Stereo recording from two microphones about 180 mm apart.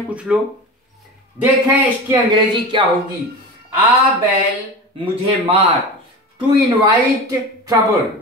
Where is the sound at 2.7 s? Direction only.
25° right (ahead or behind).